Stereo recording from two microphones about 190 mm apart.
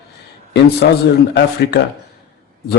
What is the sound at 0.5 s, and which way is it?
A man's voice, 60° left (ahead or behind).